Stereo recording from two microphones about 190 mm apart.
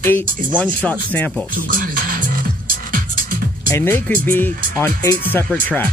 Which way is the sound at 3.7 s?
10° left (ahead or behind).